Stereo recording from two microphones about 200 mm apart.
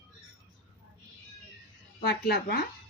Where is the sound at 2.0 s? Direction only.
50° left (ahead or behind).